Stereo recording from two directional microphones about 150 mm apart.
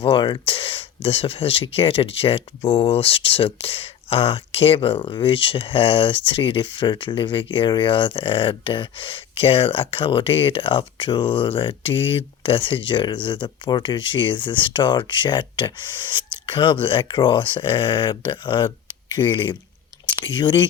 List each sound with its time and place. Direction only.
0.0 s speech: 30° left (ahead or behind)